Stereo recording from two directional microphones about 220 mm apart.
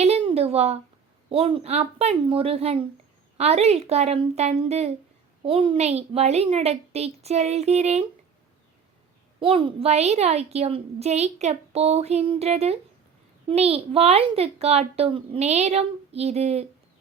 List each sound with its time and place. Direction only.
0.0 s a sound: 25° right (ahead or behind)
1.3 s a woman's voice: 25° right (ahead or behind)
9.4 s a woman's voice: 25° right (ahead or behind)